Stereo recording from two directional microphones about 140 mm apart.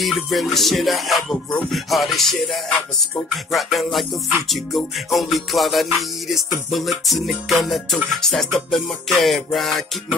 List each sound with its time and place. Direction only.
0.0 s music: centre (ahead or behind)